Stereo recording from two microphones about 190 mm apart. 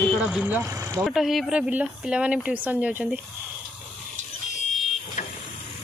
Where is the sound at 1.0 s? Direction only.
Centre (ahead or behind).